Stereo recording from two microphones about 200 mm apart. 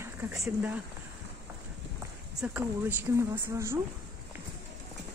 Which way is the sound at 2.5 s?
10° right (ahead or behind).